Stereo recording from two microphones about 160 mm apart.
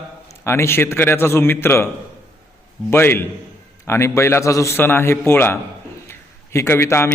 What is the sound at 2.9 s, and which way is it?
A man's voice, 15° left (ahead or behind).